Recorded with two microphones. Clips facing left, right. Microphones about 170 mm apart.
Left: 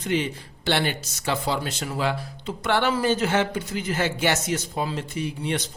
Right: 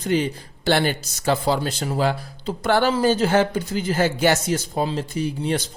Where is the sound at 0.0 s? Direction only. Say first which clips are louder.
Right 4 dB; 40° right (ahead or behind).